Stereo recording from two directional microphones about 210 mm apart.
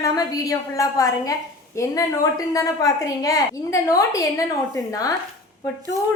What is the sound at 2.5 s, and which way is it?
A woman's voice, 15° left (ahead or behind).